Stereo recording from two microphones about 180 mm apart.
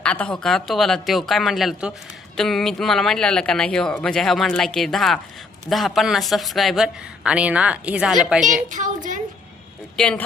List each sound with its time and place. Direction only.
0.0 s speech: 5° left (ahead or behind)
8.7 s speech: 45° right (ahead or behind)
10.0 s speech: 5° left (ahead or behind)